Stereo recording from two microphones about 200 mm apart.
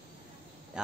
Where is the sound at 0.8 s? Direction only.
5° right (ahead or behind).